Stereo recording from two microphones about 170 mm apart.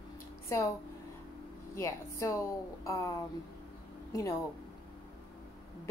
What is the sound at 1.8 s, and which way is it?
A woman's voice, 15° left (ahead or behind).